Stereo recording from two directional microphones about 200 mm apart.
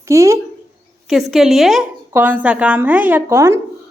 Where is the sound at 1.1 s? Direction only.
Centre (ahead or behind).